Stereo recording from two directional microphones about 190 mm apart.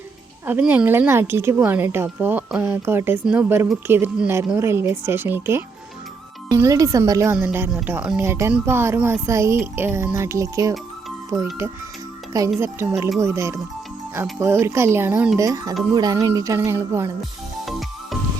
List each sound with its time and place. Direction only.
0.4 s a woman's voice: 10° right (ahead or behind)
12.5 s a woman's voice: 15° right (ahead or behind)
17.7 s music: centre (ahead or behind)